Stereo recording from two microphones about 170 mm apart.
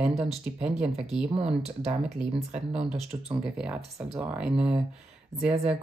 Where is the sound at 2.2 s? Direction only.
5° right (ahead or behind).